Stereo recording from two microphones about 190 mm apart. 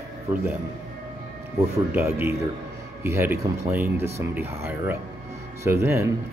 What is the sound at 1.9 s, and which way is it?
Speech, 10° right (ahead or behind).